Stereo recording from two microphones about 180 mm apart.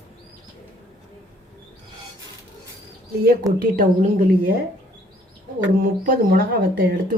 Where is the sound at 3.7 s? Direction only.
50° right (ahead or behind).